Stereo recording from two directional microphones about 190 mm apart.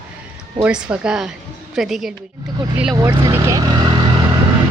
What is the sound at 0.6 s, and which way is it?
Speech, 5° right (ahead or behind).